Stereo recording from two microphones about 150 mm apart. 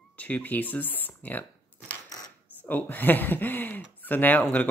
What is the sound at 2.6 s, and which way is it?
Speech, 10° left (ahead or behind).